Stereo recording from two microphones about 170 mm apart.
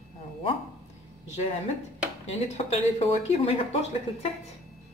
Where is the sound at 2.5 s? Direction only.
35° left (ahead or behind).